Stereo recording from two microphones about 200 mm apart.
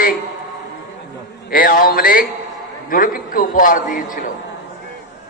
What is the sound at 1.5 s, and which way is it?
A man's voice, 45° left (ahead or behind).